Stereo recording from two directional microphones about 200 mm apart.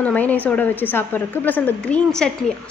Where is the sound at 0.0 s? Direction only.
10° left (ahead or behind).